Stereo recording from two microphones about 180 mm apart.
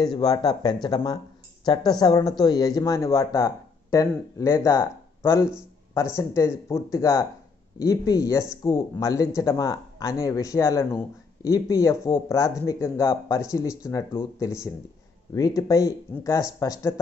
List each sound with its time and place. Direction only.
0.0 s speech: 20° left (ahead or behind)